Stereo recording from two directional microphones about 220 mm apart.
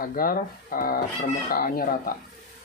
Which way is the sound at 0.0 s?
40° left (ahead or behind).